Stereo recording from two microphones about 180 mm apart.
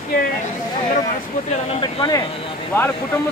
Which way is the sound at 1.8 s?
25° left (ahead or behind).